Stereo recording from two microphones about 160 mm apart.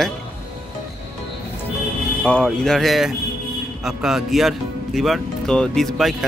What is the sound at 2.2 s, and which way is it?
Speech, 5° left (ahead or behind).